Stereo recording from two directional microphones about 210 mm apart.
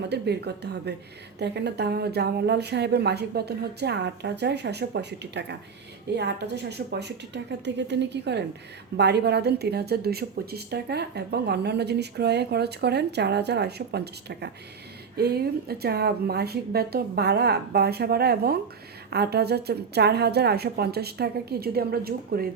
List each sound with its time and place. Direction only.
0.1 s a woman's voice: 50° right (ahead or behind)